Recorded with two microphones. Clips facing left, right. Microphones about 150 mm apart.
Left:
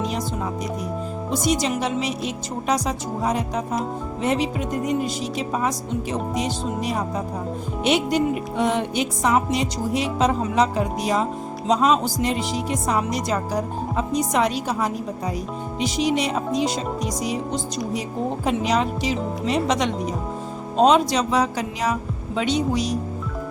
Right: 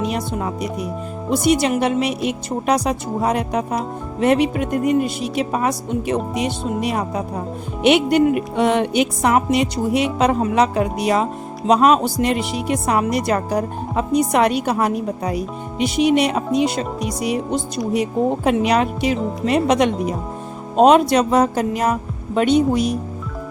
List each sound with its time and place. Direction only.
1.3 s speech: 60° right (ahead or behind)
6.8 s music: 65° right (ahead or behind)
11.7 s speech: 65° right (ahead or behind)